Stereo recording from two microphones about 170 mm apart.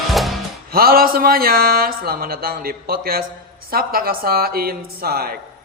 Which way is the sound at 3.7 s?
60° right (ahead or behind).